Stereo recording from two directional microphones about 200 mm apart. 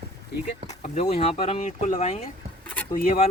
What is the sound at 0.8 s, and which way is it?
Speech, 35° left (ahead or behind).